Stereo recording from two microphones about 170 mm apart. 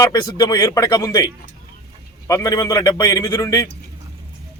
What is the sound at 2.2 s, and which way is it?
A man's voice, 20° left (ahead or behind).